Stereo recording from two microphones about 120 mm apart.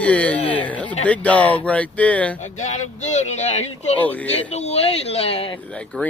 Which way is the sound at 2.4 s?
80° left.